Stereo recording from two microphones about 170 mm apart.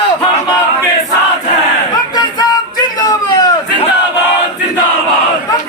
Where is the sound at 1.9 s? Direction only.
25° left (ahead or behind).